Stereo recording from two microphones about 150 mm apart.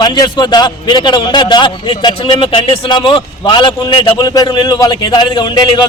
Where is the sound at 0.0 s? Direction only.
30° left (ahead or behind).